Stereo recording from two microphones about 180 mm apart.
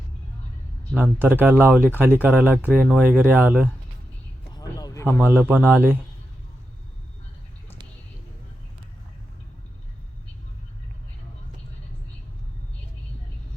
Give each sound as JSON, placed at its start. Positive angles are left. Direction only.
{"t": 1.2, "sound": "speech", "side_deg": -10}
{"t": 4.5, "sound": "a sound", "side_deg": 20}
{"t": 5.2, "sound": "speech", "side_deg": -10}